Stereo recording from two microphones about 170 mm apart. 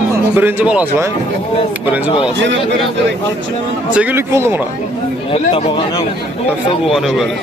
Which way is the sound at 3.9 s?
10° right (ahead or behind).